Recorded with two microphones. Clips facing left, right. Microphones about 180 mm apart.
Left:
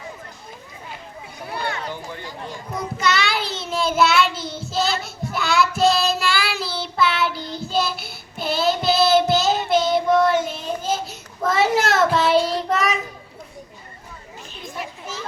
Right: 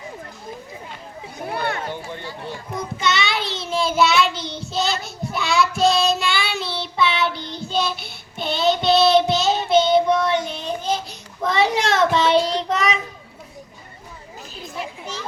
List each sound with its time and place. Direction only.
1.5 s a sound: 55° right (ahead or behind)
2.7 s child singing: centre (ahead or behind)
7.3 s child singing: 20° right (ahead or behind)
7.6 s child singing: 5° left (ahead or behind)